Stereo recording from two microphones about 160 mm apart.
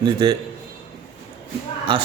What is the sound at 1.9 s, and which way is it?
Speech, 35° right (ahead or behind).